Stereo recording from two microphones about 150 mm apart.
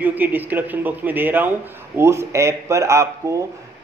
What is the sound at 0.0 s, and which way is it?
Speech, 10° right (ahead or behind).